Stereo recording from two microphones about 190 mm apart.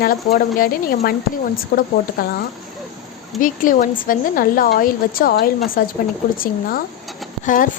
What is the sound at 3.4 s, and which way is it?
A woman's voice, 45° left (ahead or behind).